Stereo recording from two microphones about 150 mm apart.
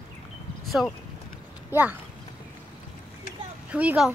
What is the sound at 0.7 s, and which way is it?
Speech, centre (ahead or behind).